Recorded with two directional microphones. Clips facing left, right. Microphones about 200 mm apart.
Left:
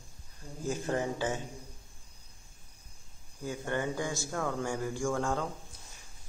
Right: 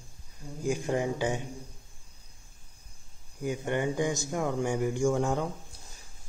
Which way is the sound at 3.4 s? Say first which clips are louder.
Right 4 dB; 15° right (ahead or behind).